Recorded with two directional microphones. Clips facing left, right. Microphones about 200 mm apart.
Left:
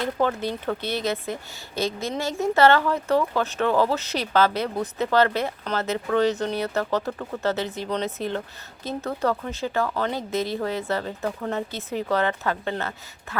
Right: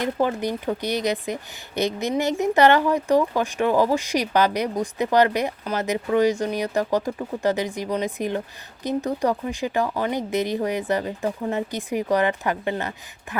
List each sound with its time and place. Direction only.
0.0 s speech: 15° right (ahead or behind)